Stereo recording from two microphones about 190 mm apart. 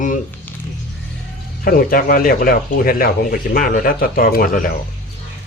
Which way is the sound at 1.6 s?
50° left (ahead or behind).